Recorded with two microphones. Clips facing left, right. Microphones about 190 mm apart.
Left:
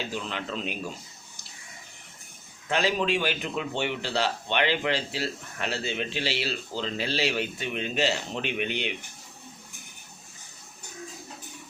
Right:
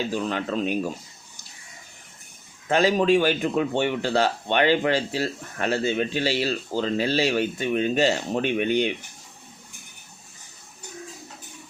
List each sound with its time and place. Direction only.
0.1 s a man's voice: 45° right (ahead or behind)
2.6 s a man's voice: 45° right (ahead or behind)